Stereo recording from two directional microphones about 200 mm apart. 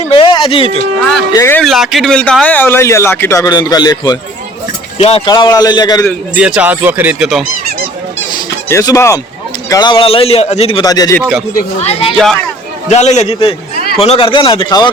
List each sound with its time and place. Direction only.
0.1 s a sound: 25° left (ahead or behind)
1.3 s speech: 15° left (ahead or behind)
1.6 s speech: centre (ahead or behind); by 6.1 s 20° left (ahead or behind)
6.3 s speech: 5° right (ahead or behind)
8.7 s speech: 15° left (ahead or behind)
11.2 s speech: 5° right (ahead or behind)
11.8 s a man's voice: 30° left (ahead or behind)